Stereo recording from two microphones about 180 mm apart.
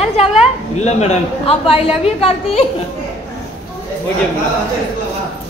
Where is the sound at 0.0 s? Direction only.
35° left (ahead or behind).